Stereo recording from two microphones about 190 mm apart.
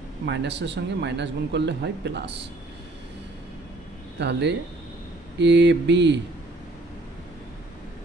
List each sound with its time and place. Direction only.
0.2 s speech: 65° right (ahead or behind)
4.2 s speech: 65° right (ahead or behind)